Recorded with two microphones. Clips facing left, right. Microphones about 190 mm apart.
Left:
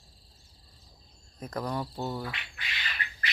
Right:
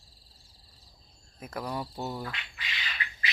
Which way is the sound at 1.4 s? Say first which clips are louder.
Left 2 dB; 5° right (ahead or behind).